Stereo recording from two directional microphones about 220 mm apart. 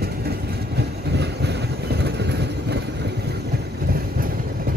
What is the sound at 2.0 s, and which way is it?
Vehicle, 50° right (ahead or behind).